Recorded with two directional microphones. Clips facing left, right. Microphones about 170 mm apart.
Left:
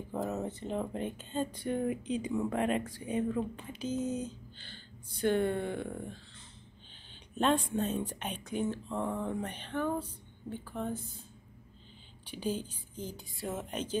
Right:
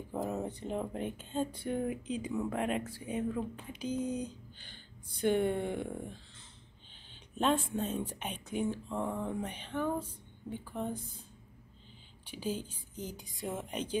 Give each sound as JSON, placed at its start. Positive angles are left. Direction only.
{"t": 0.1, "sound": "speech", "side_deg": -15}
{"t": 7.3, "sound": "a woman's voice", "side_deg": -5}
{"t": 12.3, "sound": "speech", "side_deg": -10}